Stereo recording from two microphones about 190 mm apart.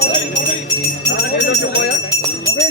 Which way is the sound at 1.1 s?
65° left (ahead or behind).